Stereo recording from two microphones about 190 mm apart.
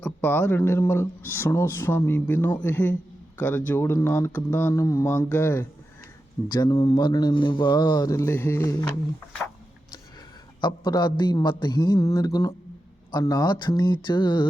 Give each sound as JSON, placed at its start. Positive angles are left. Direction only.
{"t": 0.0, "sound": "a man's voice", "side_deg": 10}
{"t": 10.6, "sound": "speech", "side_deg": 25}